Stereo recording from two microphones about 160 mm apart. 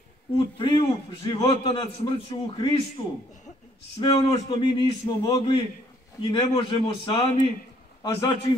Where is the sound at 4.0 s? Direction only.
30° left (ahead or behind).